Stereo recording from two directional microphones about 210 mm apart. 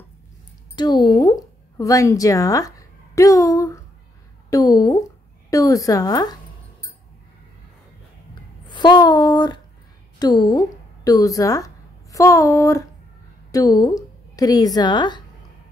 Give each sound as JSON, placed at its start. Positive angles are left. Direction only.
{"t": 0.7, "sound": "speech", "side_deg": 20}
{"t": 8.6, "sound": "a woman's voice", "side_deg": 20}